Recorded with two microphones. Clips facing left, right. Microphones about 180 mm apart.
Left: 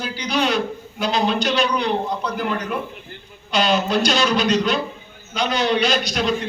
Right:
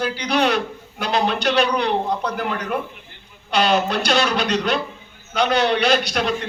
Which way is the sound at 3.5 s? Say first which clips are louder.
Even; 60° right (ahead or behind).